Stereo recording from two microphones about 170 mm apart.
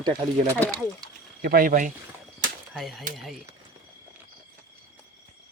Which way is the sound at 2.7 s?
Centre (ahead or behind).